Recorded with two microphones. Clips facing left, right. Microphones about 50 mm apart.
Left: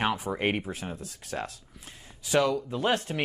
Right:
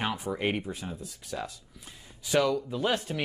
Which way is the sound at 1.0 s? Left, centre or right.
Left.